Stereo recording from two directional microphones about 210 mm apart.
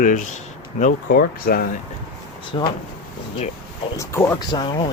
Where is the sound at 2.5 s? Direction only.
25° left (ahead or behind).